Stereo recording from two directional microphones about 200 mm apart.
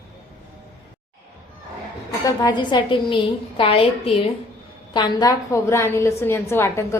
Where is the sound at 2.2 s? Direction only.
20° left (ahead or behind).